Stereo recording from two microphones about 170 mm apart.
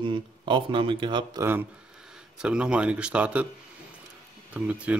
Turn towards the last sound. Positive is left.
turn(degrees=-10)  # may be behind; listen again after turning